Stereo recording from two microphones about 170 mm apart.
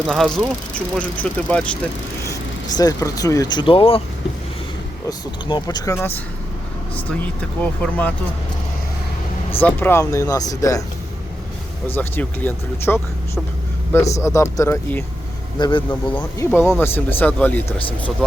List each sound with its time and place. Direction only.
0.0 s speech: centre (ahead or behind)
2.7 s speech: 20° left (ahead or behind)
5.0 s speech: 25° left (ahead or behind); by 8.1 s 10° left (ahead or behind)
9.6 s speech: 10° left (ahead or behind)
11.9 s speech: 10° left (ahead or behind)
15.5 s speech: 25° left (ahead or behind)
15.9 s speech: 10° left (ahead or behind)